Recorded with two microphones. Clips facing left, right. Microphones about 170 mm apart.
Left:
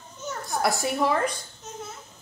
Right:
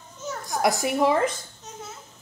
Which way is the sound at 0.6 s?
15° right (ahead or behind).